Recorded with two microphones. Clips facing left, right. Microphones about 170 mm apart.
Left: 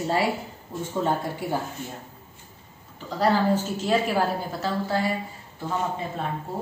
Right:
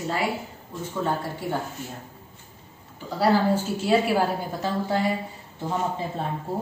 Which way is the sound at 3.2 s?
10° right (ahead or behind).